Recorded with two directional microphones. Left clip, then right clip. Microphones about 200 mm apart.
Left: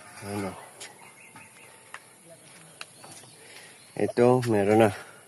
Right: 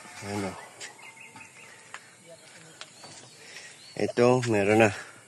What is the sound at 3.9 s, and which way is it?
Speech, 20° left (ahead or behind).